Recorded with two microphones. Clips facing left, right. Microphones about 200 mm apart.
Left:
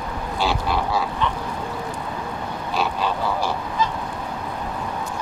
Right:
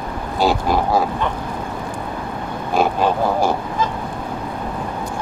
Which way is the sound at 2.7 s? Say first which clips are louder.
Right 7 dB; 50° right (ahead or behind).